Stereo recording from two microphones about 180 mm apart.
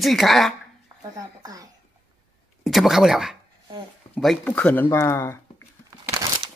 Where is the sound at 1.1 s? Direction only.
20° right (ahead or behind).